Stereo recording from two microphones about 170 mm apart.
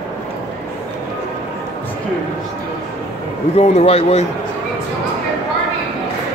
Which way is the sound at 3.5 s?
35° left (ahead or behind).